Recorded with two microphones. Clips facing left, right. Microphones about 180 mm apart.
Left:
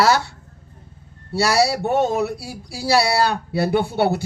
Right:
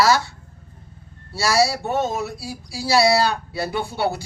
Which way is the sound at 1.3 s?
60° left (ahead or behind).